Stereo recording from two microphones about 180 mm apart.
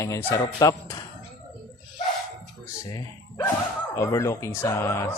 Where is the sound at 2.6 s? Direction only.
20° left (ahead or behind).